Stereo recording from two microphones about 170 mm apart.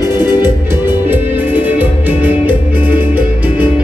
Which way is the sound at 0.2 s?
25° left (ahead or behind).